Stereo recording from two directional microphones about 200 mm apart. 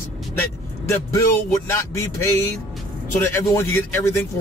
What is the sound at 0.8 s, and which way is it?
Speech, 15° left (ahead or behind).